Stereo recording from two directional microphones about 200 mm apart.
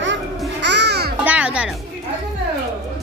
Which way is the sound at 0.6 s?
60° right (ahead or behind).